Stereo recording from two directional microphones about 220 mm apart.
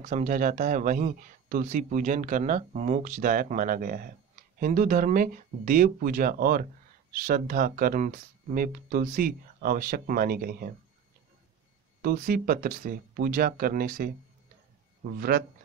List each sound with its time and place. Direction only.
0.0 s speech: 35° right (ahead or behind)
12.0 s speech: 40° right (ahead or behind)
15.1 s speech: 45° right (ahead or behind)